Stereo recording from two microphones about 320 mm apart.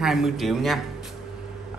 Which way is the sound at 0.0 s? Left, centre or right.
Centre.